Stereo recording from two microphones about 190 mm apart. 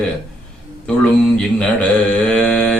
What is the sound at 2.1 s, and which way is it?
Speech, 5° left (ahead or behind).